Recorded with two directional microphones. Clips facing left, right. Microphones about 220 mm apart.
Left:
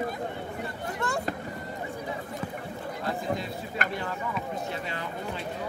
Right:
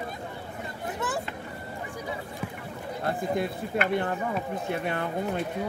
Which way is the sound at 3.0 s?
55° right (ahead or behind).